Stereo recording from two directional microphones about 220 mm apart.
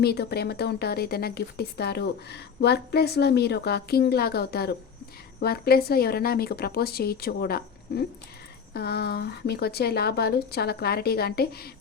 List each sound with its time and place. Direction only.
0.0 s speech: 45° left (ahead or behind)